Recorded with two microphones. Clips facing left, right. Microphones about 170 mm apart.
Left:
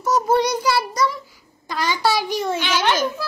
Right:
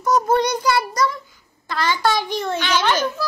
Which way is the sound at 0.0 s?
5° left (ahead or behind).